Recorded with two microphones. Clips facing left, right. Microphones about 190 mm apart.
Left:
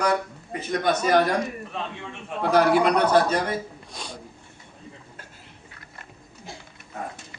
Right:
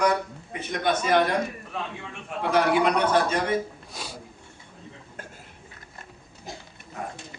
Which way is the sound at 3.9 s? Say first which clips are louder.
Left 1 dB; 5° right (ahead or behind).